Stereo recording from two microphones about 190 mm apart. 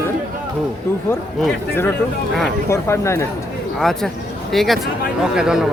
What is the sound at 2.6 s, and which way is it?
Speech, 15° left (ahead or behind).